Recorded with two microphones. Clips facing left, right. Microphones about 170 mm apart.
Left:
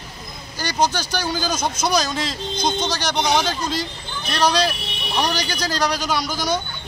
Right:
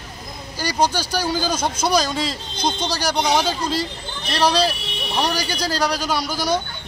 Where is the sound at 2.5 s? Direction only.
30° right (ahead or behind).